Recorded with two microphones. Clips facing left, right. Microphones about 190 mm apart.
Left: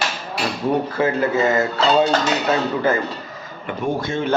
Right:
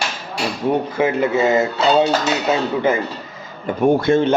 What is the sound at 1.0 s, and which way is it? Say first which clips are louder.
A man's voice: right 2 dB; 20° right (ahead or behind).